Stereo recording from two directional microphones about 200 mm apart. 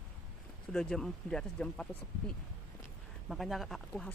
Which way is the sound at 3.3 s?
Centre (ahead or behind).